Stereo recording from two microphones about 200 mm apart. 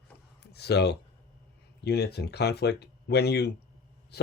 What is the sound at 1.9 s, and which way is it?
Speech, 55° left (ahead or behind).